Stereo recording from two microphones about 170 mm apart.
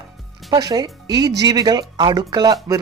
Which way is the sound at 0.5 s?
20° right (ahead or behind).